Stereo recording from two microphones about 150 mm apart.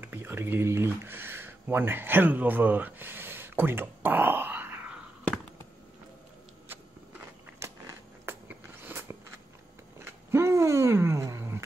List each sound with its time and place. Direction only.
0.0 s speech: 15° right (ahead or behind)
6.7 s biting: 15° right (ahead or behind)
9.9 s a sound: 15° right (ahead or behind)